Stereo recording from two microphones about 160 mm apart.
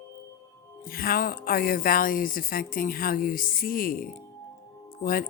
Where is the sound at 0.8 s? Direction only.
65° left (ahead or behind).